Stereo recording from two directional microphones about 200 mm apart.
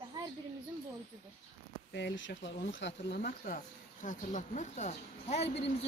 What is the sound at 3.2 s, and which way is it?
Speech, 45° left (ahead or behind).